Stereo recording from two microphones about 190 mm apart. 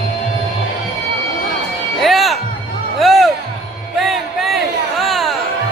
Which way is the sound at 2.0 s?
Centre (ahead or behind).